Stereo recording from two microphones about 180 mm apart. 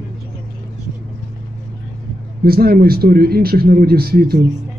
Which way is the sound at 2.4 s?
55° right (ahead or behind).